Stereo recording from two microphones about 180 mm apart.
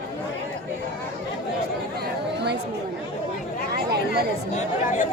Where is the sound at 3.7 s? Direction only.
65° right (ahead or behind).